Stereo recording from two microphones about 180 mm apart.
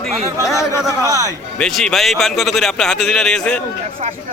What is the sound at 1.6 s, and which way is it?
A man's voice, 5° left (ahead or behind).